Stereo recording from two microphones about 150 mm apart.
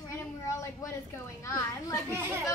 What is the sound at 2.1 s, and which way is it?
Speech, 15° right (ahead or behind).